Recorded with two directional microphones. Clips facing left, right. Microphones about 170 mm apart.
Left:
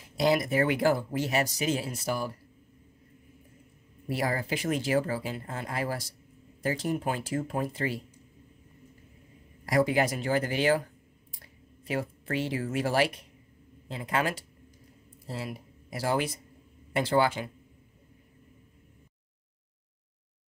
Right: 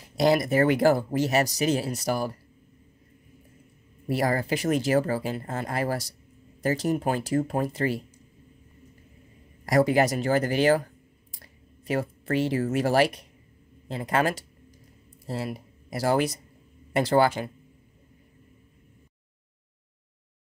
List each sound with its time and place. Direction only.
0.2 s speech: 40° right (ahead or behind)
4.1 s speech: 40° right (ahead or behind)
9.7 s speech: 40° right (ahead or behind)